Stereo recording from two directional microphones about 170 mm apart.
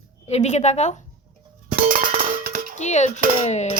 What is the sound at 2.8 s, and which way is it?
Speech, 45° left (ahead or behind).